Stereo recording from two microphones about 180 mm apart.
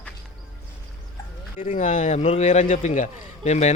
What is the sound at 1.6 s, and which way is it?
A man's voice, 45° left (ahead or behind).